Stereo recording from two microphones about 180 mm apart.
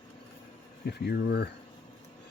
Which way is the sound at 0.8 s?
60° left (ahead or behind).